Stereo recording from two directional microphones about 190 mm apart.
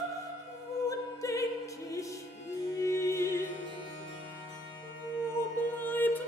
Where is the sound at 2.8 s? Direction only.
15° left (ahead or behind).